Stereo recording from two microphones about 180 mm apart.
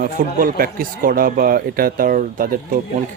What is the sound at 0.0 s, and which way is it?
Speech, 50° right (ahead or behind).